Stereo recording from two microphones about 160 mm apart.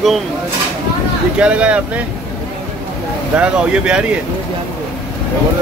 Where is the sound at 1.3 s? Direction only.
5° right (ahead or behind).